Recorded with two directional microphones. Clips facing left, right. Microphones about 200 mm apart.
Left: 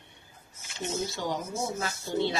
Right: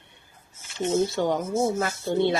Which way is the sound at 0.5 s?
25° right (ahead or behind).